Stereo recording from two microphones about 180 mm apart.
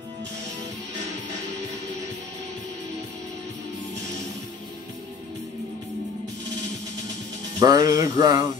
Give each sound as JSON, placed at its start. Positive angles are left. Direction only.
{"t": 7.6, "sound": "music", "side_deg": -20}